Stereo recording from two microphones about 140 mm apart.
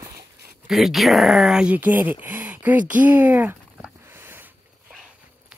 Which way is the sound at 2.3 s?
10° right (ahead or behind).